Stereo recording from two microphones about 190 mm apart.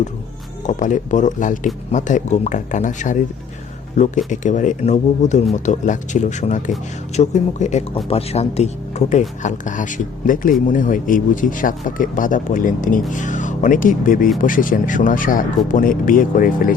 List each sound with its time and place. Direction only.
0.7 s speech: 40° left (ahead or behind)